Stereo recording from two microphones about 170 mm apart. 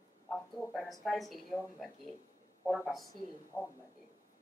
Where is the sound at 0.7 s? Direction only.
Centre (ahead or behind).